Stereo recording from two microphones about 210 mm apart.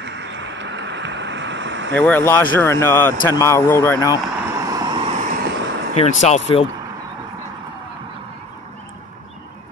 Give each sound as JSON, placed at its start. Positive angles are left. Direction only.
{"t": 0.0, "sound": "vehicle", "side_deg": -55}
{"t": 2.0, "sound": "speech", "side_deg": 10}
{"t": 4.6, "sound": "vehicle", "side_deg": -15}
{"t": 5.9, "sound": "speech", "side_deg": 30}